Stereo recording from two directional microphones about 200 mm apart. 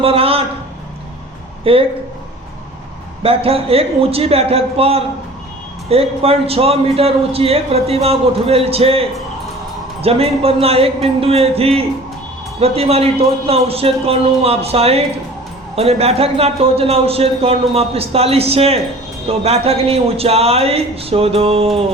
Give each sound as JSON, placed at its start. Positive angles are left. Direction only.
{"t": 0.0, "sound": "a sound", "side_deg": -30}
{"t": 1.7, "sound": "a man's voice", "side_deg": -30}
{"t": 3.2, "sound": "a man's voice", "side_deg": -30}